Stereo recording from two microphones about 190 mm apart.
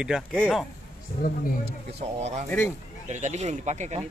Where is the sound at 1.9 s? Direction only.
35° right (ahead or behind).